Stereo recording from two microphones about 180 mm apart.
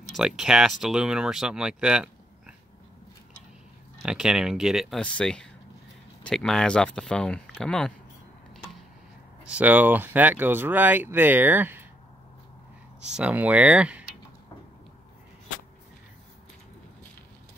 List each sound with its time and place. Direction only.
0.1 s speech: centre (ahead or behind)
4.0 s speech: 5° right (ahead or behind)
9.5 s speech: 10° right (ahead or behind)
13.1 s speech: 5° right (ahead or behind)